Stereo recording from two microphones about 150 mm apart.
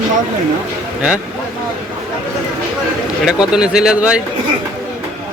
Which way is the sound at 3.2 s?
5° right (ahead or behind).